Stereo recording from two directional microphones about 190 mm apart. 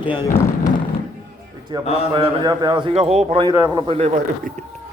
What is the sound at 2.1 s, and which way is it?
A man's voice, 25° right (ahead or behind).